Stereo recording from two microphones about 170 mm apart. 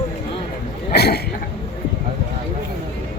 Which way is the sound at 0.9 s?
70° left (ahead or behind).